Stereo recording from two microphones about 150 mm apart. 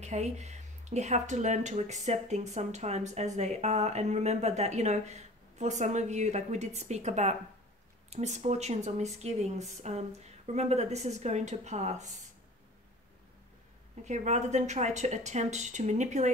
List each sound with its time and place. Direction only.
0.0 s speech: 50° right (ahead or behind)
14.0 s speech: 50° right (ahead or behind)